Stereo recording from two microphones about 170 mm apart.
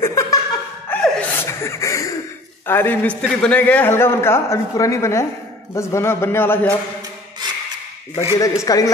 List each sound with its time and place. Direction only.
0.0 s laughter: 20° left (ahead or behind)
0.8 s music: 10° left (ahead or behind)
2.6 s a man's voice: 10° left (ahead or behind)
8.6 s speech: 20° left (ahead or behind)